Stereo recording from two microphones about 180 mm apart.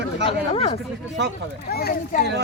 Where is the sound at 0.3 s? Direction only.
30° left (ahead or behind).